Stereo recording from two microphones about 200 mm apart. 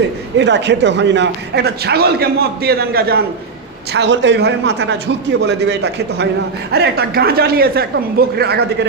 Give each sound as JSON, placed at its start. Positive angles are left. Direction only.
{"t": 0.3, "sound": "a man's voice", "side_deg": -60}